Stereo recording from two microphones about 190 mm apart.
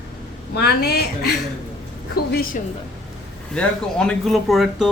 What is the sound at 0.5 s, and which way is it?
Speech, 55° left (ahead or behind).